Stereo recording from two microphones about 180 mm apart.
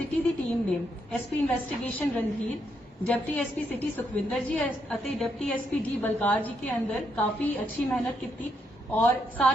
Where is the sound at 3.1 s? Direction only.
10° left (ahead or behind).